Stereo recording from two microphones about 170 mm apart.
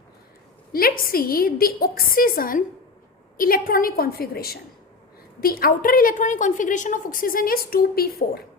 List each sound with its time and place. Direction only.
0.7 s a woman's voice: 60° left (ahead or behind)